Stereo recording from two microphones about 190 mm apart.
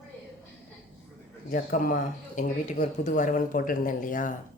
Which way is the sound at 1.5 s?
45° left (ahead or behind).